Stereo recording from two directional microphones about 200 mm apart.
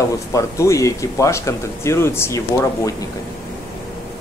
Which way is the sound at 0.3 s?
15° left (ahead or behind).